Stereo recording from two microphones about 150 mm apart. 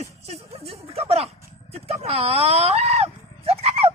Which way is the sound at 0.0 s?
45° right (ahead or behind).